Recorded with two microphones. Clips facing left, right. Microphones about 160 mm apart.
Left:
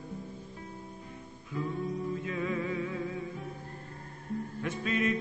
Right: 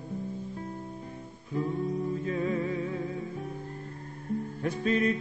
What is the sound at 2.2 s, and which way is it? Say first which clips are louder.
Music: right 4 dB; 35° right (ahead or behind).